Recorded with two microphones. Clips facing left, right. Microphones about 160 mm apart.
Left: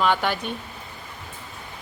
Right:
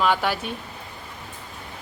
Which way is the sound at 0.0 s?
5° right (ahead or behind).